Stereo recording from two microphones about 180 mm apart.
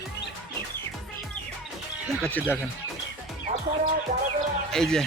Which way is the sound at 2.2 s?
10° left (ahead or behind).